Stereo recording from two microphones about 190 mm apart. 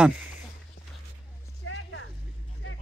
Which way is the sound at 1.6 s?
80° left.